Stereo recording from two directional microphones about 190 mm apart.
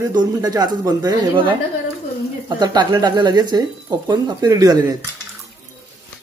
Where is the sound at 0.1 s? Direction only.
20° right (ahead or behind).